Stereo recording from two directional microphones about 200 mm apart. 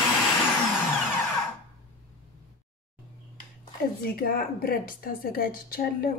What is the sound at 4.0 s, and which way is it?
A woman's voice, 45° left (ahead or behind).